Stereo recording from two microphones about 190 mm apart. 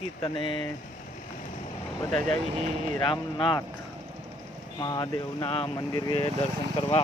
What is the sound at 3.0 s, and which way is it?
Speech, 25° left (ahead or behind).